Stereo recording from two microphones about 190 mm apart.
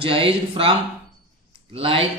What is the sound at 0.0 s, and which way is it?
Speech, 30° right (ahead or behind).